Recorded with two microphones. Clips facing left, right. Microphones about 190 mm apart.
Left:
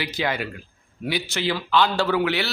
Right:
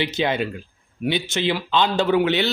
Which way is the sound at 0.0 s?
20° right (ahead or behind).